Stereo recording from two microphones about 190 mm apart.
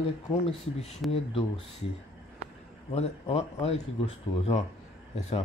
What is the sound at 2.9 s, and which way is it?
Speech, 30° left (ahead or behind).